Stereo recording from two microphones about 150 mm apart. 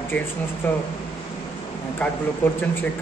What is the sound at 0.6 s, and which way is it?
Speech, 10° left (ahead or behind).